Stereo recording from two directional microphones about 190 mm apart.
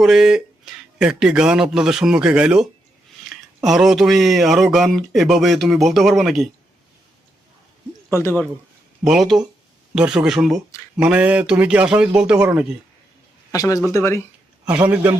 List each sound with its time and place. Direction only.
0.0 s speech: 5° right (ahead or behind)
8.1 s speech: 15° left (ahead or behind)
9.0 s speech: centre (ahead or behind)
13.5 s speech: 20° left (ahead or behind)
14.7 s a man's voice: 10° right (ahead or behind)